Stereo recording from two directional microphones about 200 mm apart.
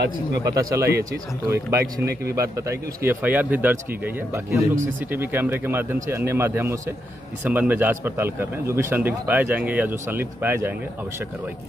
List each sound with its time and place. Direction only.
0.4 s a man's voice: 15° right (ahead or behind)